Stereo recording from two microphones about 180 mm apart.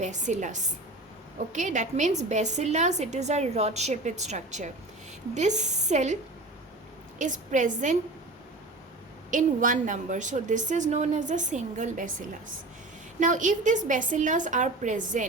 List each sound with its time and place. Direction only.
0.0 s a woman's voice: 40° right (ahead or behind)
7.2 s a woman's voice: 45° right (ahead or behind)
9.3 s a woman's voice: 45° right (ahead or behind)
13.1 s a woman's voice: 45° right (ahead or behind)